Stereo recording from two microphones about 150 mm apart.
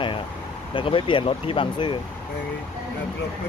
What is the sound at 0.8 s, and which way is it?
Speech, 35° left (ahead or behind).